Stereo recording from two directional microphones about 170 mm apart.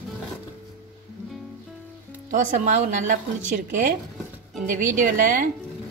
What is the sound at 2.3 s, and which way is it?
Speech, 50° right (ahead or behind).